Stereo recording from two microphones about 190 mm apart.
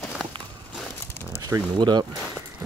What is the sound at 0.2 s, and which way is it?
Walk, centre (ahead or behind).